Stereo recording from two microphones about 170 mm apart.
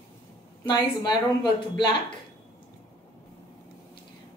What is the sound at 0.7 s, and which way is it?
A woman's voice, 25° left (ahead or behind).